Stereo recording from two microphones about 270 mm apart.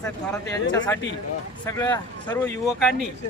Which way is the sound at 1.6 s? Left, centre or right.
Centre.